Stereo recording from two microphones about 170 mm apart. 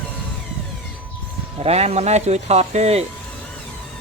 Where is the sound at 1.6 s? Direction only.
40° right (ahead or behind).